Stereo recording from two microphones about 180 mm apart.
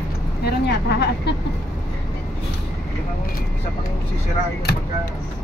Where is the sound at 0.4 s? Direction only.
65° left (ahead or behind).